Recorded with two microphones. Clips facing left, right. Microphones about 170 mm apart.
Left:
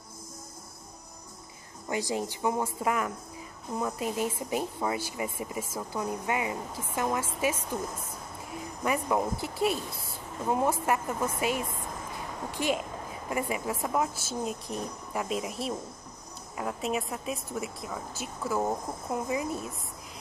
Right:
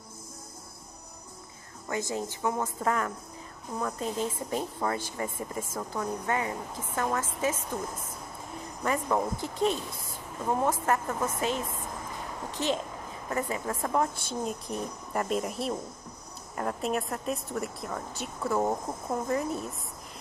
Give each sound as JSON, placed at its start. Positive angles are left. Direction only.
{"t": 1.9, "sound": "speech", "side_deg": 15}
{"t": 8.8, "sound": "a woman's voice", "side_deg": 10}